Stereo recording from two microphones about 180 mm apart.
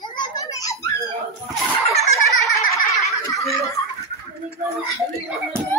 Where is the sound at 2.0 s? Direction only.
Centre (ahead or behind).